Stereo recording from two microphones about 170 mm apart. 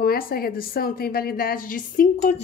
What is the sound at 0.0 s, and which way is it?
A woman's voice, 60° left (ahead or behind).